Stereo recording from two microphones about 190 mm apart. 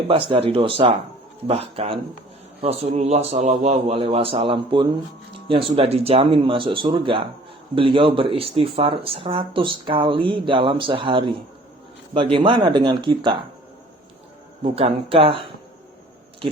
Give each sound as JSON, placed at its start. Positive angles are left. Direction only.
{"t": 0.1, "sound": "speech", "side_deg": -30}
{"t": 14.6, "sound": "speech", "side_deg": -30}